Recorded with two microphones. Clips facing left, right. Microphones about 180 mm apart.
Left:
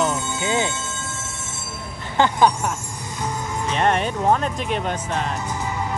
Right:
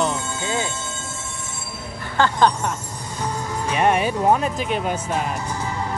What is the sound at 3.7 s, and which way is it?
Speech, 10° right (ahead or behind).